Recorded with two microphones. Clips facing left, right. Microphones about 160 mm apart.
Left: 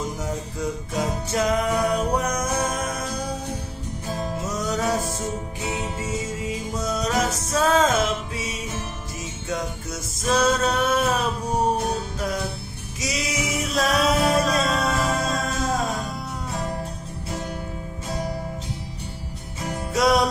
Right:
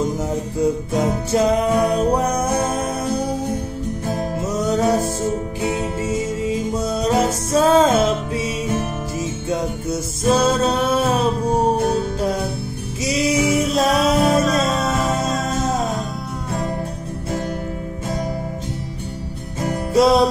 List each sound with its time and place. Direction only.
0.0 s music: 30° right (ahead or behind)
4.5 s music: 30° right (ahead or behind)
13.3 s music: centre (ahead or behind)
19.9 s music: 30° right (ahead or behind)